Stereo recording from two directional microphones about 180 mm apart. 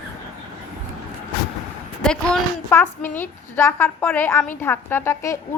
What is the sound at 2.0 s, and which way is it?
A woman's voice, 5° left (ahead or behind).